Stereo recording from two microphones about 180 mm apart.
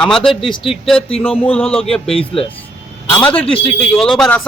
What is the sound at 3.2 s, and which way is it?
Speech, 5° left (ahead or behind).